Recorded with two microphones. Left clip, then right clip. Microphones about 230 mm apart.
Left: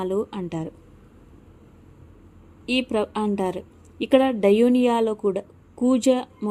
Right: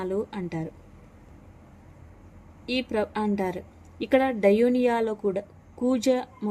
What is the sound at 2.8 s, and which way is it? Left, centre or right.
Speech, centre.